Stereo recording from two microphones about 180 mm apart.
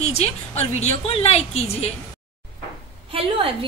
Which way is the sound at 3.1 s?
30° right (ahead or behind).